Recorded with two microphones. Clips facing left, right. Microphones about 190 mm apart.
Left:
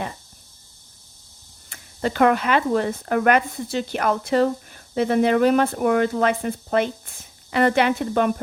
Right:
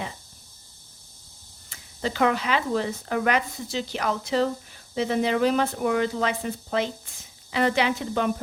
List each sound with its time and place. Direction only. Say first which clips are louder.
1.7 s speech: left 4 dB; 55° left (ahead or behind)